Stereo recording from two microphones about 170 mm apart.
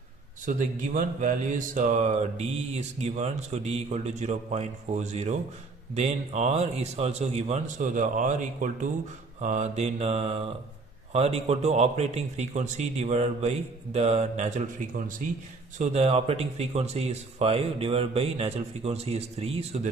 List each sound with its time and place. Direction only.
0.5 s speech: 50° right (ahead or behind)
15.8 s speech: 35° right (ahead or behind)